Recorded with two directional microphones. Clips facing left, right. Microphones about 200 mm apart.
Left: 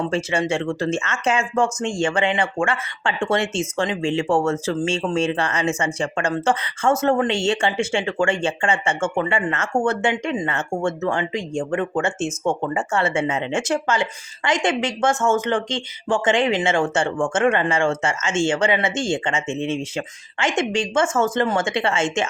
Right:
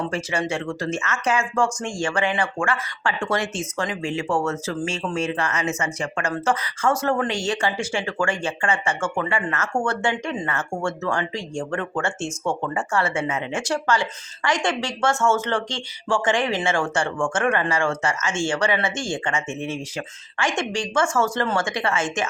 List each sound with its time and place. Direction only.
0.0 s speech: 25° left (ahead or behind)